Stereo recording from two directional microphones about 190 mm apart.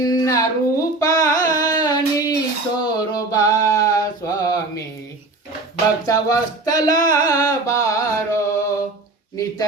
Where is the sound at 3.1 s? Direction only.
20° left (ahead or behind).